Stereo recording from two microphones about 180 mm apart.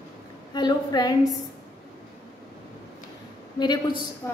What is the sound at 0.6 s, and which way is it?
Speech, 25° left (ahead or behind).